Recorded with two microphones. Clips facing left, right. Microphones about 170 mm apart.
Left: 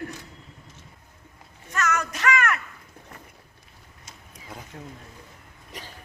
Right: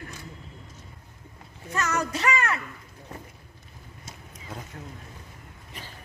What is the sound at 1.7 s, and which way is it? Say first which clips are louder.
Music: even; 30° right (ahead or behind).